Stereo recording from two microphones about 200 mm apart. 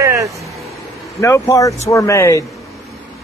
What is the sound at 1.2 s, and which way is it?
Speech, 15° left (ahead or behind).